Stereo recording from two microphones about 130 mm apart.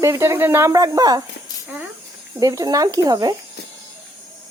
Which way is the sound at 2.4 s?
30° right (ahead or behind).